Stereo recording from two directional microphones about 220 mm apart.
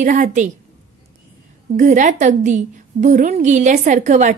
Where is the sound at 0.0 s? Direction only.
35° right (ahead or behind).